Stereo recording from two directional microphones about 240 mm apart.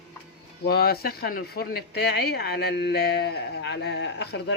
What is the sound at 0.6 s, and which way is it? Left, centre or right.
Speech, left.